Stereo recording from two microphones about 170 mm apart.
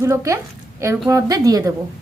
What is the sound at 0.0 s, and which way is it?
A woman's voice, 15° right (ahead or behind).